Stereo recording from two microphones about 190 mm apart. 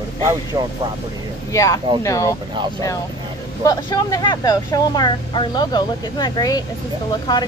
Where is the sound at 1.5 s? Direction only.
15° left (ahead or behind).